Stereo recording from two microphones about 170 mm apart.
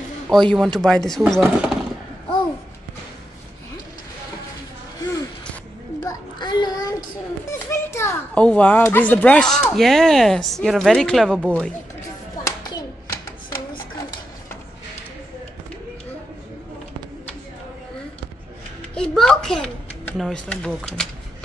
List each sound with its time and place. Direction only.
0.3 s a child's voice: centre (ahead or behind)
5.9 s child singing: 25° left (ahead or behind)
7.5 s a child's voice: 15° left (ahead or behind)
12.4 s hands: 25° left (ahead or behind)
18.9 s a sound: 5° left (ahead or behind)